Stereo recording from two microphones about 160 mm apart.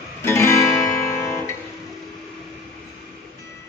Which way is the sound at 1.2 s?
15° left (ahead or behind).